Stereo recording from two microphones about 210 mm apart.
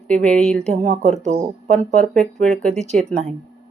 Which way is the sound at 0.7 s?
35° right (ahead or behind).